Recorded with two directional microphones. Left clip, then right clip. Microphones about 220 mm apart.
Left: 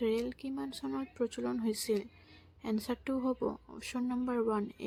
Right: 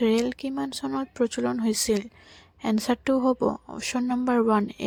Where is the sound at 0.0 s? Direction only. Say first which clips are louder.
Right 9 dB; 35° right (ahead or behind).